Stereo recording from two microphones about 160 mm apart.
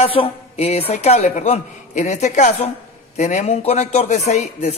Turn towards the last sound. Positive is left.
turn(degrees=45)  # may be behind; listen again after turning